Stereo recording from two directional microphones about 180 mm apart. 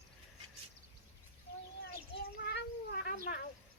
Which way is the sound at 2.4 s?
65° left (ahead or behind).